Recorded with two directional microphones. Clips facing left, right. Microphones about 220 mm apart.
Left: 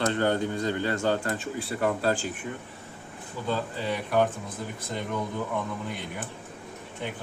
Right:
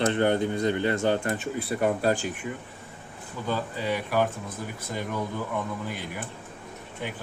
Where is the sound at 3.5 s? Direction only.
10° right (ahead or behind).